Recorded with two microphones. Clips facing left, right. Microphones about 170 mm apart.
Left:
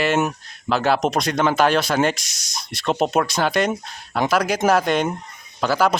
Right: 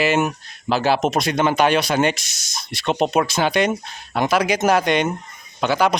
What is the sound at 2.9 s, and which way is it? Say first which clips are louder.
Speech: right 1 dB; centre (ahead or behind).